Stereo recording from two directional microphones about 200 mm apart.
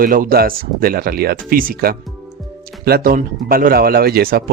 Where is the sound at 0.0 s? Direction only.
45° right (ahead or behind).